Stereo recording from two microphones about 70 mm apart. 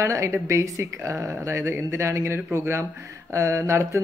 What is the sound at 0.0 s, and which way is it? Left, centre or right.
A man's voice, right.